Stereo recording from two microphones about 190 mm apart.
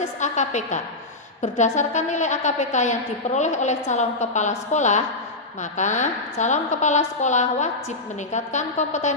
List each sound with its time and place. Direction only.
0.0 s a woman's voice: 40° left (ahead or behind)